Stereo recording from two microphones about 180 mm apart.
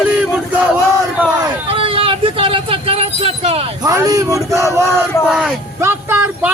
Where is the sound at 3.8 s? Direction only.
20° right (ahead or behind).